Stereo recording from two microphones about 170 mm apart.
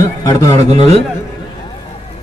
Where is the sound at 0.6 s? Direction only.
40° right (ahead or behind).